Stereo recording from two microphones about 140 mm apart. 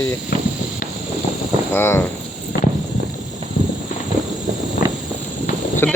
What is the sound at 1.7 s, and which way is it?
Speech, 15° left (ahead or behind).